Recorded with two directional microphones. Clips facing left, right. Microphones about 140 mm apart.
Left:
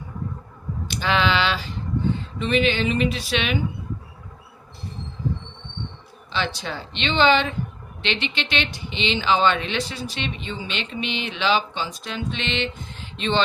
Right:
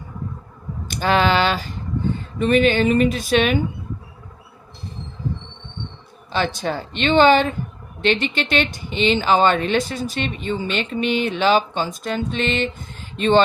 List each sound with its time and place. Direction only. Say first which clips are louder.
0.9 s a sound: right 4 dB; 45° right (ahead or behind)
2.4 s speech: right 6 dB; 50° right (ahead or behind)
6.3 s speech: right 5 dB; 45° right (ahead or behind)